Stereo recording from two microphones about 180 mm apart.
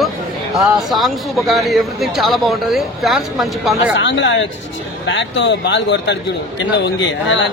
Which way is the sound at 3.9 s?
90° left.